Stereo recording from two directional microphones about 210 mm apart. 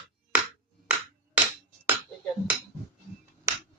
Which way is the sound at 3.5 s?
15° right (ahead or behind).